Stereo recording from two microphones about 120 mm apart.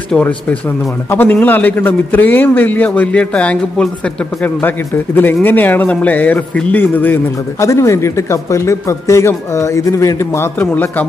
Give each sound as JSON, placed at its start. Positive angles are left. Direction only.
{"t": 1.1, "sound": "a man's voice", "side_deg": 15}